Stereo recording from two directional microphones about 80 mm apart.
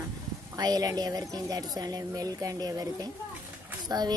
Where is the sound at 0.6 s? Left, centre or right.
Right.